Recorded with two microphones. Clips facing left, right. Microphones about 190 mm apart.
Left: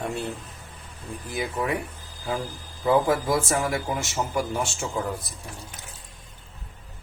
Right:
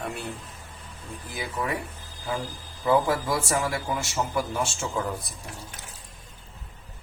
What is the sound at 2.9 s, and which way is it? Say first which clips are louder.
A man's voice: left 2 dB; 20° left (ahead or behind).